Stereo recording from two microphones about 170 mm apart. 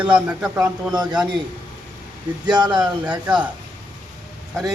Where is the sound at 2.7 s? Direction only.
10° right (ahead or behind).